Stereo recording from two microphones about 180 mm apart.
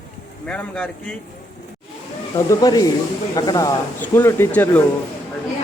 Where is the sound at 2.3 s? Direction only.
20° left (ahead or behind).